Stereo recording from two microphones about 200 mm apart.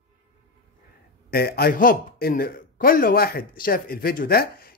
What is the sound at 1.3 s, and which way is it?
A man's voice, 50° left (ahead or behind).